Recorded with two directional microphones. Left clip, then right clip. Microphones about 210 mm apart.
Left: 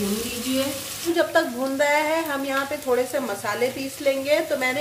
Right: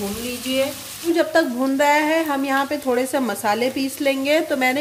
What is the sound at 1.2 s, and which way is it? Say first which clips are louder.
Speech: right 2 dB; 35° right (ahead or behind).